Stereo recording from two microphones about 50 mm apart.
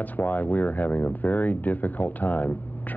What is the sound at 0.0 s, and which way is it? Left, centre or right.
Speech, left.